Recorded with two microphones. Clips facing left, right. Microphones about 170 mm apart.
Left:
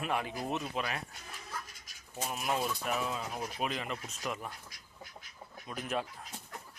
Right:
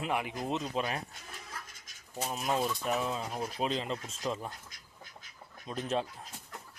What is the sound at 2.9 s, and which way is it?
Speech, 30° right (ahead or behind).